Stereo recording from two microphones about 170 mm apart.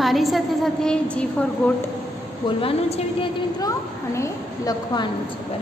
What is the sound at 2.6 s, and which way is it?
A woman's voice, 30° left (ahead or behind).